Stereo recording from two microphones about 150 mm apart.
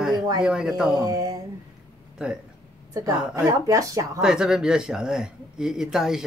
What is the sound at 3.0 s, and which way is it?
A woman's voice, 20° right (ahead or behind).